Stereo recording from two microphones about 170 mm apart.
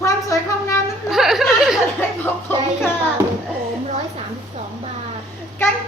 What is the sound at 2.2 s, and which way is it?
Music, 15° left (ahead or behind).